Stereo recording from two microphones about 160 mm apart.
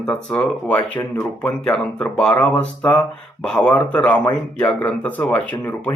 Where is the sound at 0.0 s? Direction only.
5° left (ahead or behind).